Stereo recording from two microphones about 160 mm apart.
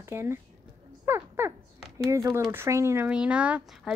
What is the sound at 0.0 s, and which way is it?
Speech, 15° right (ahead or behind).